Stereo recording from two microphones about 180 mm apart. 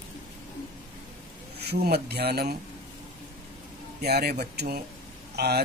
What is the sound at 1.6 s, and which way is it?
Speech, 65° right (ahead or behind).